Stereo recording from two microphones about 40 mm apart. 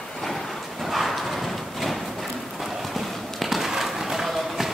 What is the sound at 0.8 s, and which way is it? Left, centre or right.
Clip-clop, centre.